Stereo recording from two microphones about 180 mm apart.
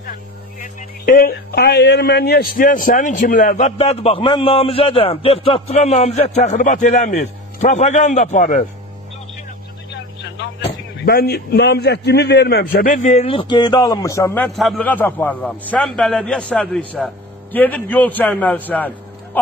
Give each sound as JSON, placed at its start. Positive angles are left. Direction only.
{"t": 0.6, "sound": "speech", "side_deg": 50}
{"t": 10.7, "sound": "a man's voice", "side_deg": 55}
{"t": 12.7, "sound": "a man's voice", "side_deg": 45}